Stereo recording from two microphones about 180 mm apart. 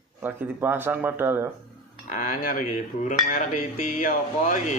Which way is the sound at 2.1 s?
45° left (ahead or behind).